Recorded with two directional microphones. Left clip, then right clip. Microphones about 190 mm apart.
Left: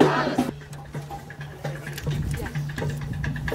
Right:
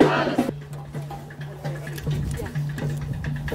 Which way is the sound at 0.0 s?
50° right (ahead or behind).